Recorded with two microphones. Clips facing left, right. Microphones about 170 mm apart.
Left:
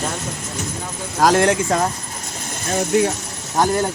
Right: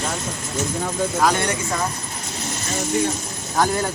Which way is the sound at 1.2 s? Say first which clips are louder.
Left 8 dB; 90° left.